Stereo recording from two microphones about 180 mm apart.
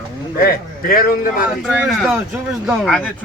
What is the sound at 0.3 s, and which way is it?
A man's voice, 55° left (ahead or behind).